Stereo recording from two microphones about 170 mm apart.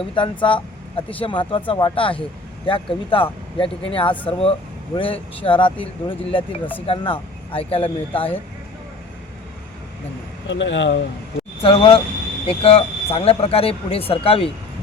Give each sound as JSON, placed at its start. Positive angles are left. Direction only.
{"t": 0.0, "sound": "speech", "side_deg": 30}
{"t": 10.5, "sound": "speech", "side_deg": 90}
{"t": 11.6, "sound": "speech", "side_deg": 30}